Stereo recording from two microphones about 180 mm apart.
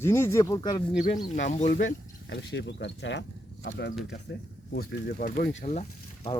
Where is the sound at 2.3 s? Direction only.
75° left (ahead or behind).